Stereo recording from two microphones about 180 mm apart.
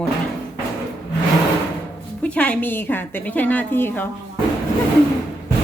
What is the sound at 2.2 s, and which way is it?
A woman's voice, 5° left (ahead or behind).